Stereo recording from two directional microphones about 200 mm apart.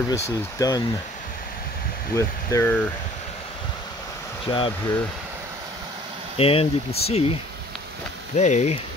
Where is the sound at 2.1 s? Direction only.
15° left (ahead or behind).